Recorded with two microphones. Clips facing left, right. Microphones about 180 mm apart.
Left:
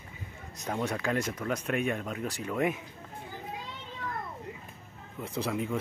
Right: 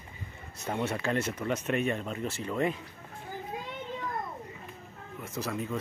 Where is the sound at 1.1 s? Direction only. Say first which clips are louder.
Right 1 dB; 10° left (ahead or behind).